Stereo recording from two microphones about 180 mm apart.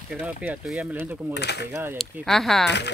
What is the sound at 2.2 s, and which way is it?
Speech, centre (ahead or behind).